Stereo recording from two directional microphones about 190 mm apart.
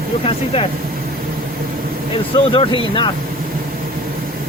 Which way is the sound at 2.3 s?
25° left (ahead or behind).